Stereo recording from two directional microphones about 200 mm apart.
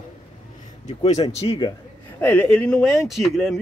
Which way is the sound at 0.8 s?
35° left (ahead or behind).